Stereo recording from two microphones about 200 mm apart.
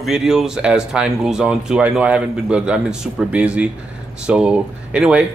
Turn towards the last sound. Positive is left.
turn(degrees=-5)  # may be behind; listen again after turning